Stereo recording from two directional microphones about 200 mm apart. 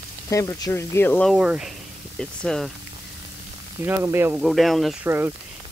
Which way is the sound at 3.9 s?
10° right (ahead or behind).